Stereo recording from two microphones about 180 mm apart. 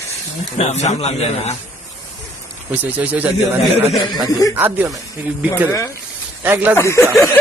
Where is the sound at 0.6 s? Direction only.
40° left (ahead or behind).